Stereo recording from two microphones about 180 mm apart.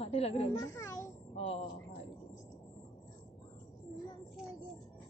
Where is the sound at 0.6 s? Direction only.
20° left (ahead or behind).